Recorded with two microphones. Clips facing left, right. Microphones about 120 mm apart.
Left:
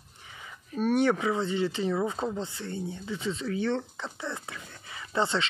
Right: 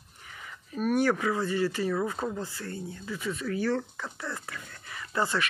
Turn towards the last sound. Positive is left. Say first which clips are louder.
# left 1 dB
turn(degrees=25)  # may be behind; listen again after turning